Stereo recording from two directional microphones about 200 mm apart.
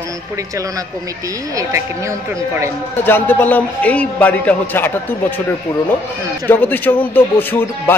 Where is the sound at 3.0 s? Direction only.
10° left (ahead or behind).